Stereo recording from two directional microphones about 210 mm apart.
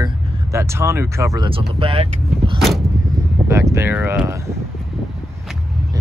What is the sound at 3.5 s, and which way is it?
Speech, 15° right (ahead or behind).